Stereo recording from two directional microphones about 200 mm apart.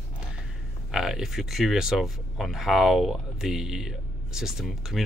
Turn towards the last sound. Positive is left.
turn(degrees=0)  # may be behind; listen again after turning